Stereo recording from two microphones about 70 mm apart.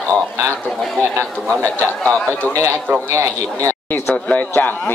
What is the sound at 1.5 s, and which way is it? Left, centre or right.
Speech, centre.